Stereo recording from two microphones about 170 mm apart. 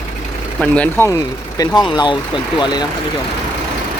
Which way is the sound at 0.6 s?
10° left (ahead or behind).